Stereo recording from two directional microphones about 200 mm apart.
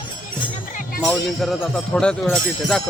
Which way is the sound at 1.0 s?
Centre (ahead or behind).